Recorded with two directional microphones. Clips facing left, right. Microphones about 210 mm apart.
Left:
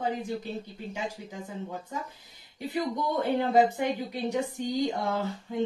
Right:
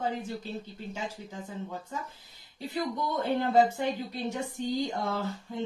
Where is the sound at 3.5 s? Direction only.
15° left (ahead or behind).